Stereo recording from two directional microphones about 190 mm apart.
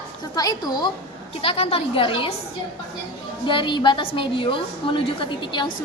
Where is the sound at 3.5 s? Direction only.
25° left (ahead or behind).